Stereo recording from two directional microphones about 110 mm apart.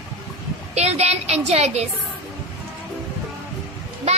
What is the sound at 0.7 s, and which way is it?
A woman's voice, 75° right (ahead or behind).